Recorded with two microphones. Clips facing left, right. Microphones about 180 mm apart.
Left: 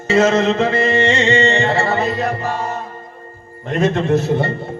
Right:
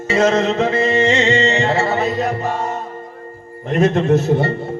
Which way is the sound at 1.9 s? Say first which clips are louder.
Even; centre (ahead or behind).